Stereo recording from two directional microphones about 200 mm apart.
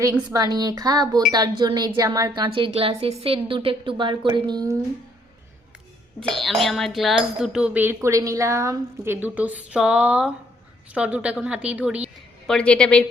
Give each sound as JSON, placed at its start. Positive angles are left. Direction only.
{"t": 0.0, "sound": "a woman's voice", "side_deg": -20}
{"t": 6.1, "sound": "speech", "side_deg": 0}
{"t": 12.5, "sound": "speech", "side_deg": 5}